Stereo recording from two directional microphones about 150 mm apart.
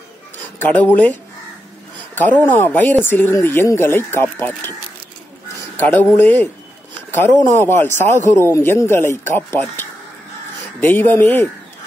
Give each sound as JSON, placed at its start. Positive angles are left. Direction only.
{"t": 0.6, "sound": "speech", "side_deg": 10}
{"t": 2.1, "sound": "speech", "side_deg": 10}
{"t": 5.8, "sound": "speech", "side_deg": 15}